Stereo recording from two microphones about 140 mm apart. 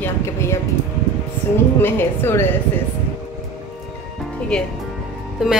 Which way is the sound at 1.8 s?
15° left (ahead or behind).